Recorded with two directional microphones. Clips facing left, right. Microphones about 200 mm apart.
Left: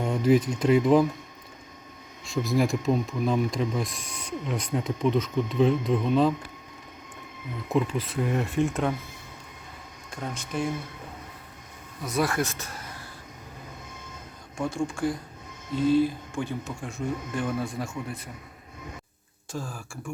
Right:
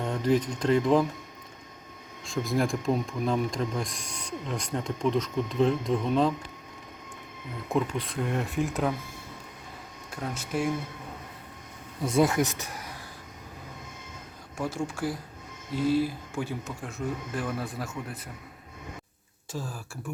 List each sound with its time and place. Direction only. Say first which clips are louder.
0.0 s speech: left 4 dB; 10° left (ahead or behind)
2.4 s speech: left 2 dB; 5° left (ahead or behind)
7.7 s speech: left 2 dB; centre (ahead or behind)
10.1 s speech: right 1 dB; 5° right (ahead or behind)
12.0 s speech: right 3 dB; 25° right (ahead or behind)
14.6 s speech: left 3 dB; 5° right (ahead or behind)
19.5 s speech: left 1 dB; 5° right (ahead or behind)